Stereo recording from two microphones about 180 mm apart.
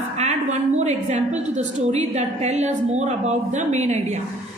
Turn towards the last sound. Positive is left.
turn(degrees=-40)  # may be behind; listen again after turning